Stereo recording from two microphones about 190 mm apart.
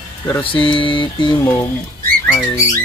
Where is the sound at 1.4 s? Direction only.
15° left (ahead or behind).